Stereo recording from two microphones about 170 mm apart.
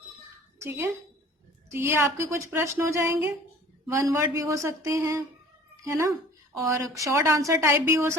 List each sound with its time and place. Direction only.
0.6 s a woman's voice: 15° right (ahead or behind)